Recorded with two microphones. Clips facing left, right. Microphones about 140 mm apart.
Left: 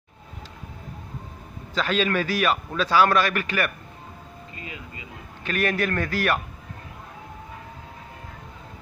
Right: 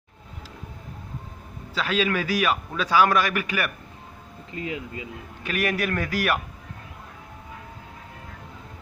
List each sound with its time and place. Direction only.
1.7 s a man's voice: 10° right (ahead or behind)
4.6 s speech: 75° right (ahead or behind)
5.4 s a man's voice: 10° right (ahead or behind)